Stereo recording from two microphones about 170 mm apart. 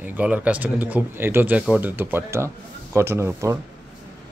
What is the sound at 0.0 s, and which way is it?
Speech, 10° right (ahead or behind).